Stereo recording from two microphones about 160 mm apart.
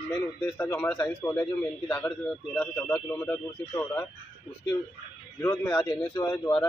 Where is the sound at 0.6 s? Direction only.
10° left (ahead or behind).